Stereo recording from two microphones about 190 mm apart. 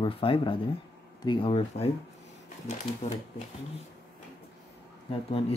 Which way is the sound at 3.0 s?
35° left (ahead or behind).